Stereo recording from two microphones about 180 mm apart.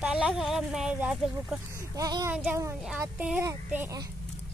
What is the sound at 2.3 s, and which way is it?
A woman's voice, 10° right (ahead or behind).